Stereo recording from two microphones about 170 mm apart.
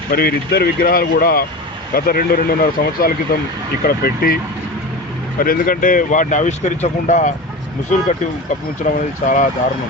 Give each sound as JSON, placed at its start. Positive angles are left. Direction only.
{"t": 0.1, "sound": "speech", "side_deg": 65}
{"t": 5.4, "sound": "speech", "side_deg": 55}
{"t": 8.9, "sound": "speech", "side_deg": 50}